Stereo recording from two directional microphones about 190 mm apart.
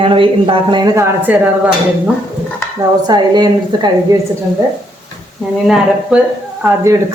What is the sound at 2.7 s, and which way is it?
A woman's voice, 20° right (ahead or behind).